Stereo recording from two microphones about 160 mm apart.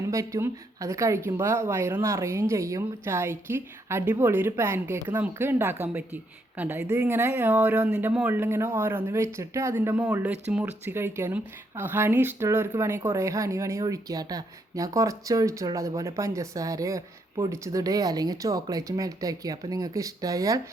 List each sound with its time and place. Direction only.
0.1 s speech: 20° right (ahead or behind)